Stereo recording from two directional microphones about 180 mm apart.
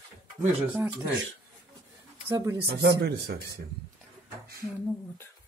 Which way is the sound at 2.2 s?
20° right (ahead or behind).